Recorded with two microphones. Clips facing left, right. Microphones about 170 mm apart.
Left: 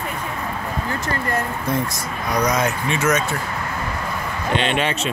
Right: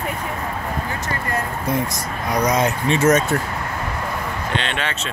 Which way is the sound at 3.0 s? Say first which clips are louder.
Right 5 dB; 45° right (ahead or behind).